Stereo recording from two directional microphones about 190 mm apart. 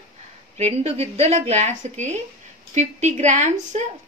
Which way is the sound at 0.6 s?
35° right (ahead or behind).